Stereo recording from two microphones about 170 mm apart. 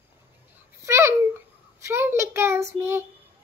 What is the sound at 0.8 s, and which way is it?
Babbling, 15° right (ahead or behind).